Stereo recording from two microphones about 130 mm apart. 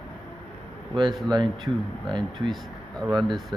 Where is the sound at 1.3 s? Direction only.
35° right (ahead or behind).